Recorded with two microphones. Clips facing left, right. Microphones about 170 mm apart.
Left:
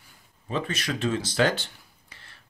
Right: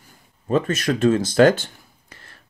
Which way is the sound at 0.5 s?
45° right (ahead or behind).